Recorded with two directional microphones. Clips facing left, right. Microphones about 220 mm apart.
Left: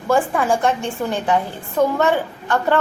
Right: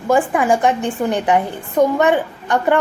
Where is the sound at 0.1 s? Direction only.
15° right (ahead or behind).